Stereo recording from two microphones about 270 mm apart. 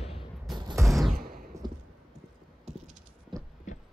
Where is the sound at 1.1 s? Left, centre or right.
Right.